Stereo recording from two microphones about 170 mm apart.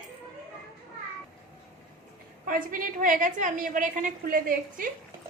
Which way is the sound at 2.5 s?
55° right (ahead or behind).